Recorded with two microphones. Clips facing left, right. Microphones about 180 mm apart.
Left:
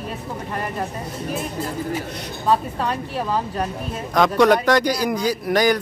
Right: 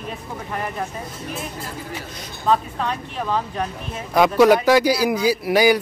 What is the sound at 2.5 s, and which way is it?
Speech, 5° left (ahead or behind).